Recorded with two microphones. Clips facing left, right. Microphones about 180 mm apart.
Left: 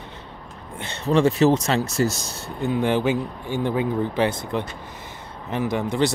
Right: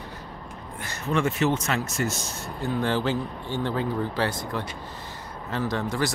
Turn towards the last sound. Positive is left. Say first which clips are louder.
# left 4 dB
turn(degrees=15)  # may be behind; listen again after turning